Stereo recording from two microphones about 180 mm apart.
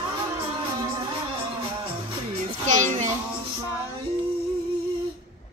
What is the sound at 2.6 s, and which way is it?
Child singing, 45° right (ahead or behind).